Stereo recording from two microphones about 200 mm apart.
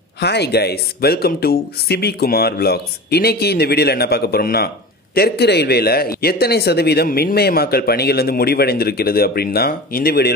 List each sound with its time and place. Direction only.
0.2 s a man's voice: 55° left (ahead or behind)